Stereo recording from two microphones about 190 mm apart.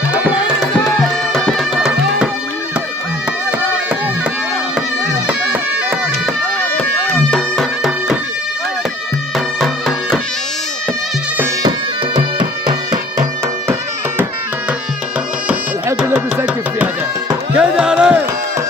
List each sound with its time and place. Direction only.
0.1 s tabla: 5° right (ahead or behind)
0.8 s music: centre (ahead or behind)
3.5 s music: 5° right (ahead or behind)
4.7 s bagpipes: 5° right (ahead or behind)
6.6 s bagpipes: 5° left (ahead or behind)
9.6 s music: centre (ahead or behind)
12.2 s music: 25° right (ahead or behind)
15.4 s music: 5° right (ahead or behind)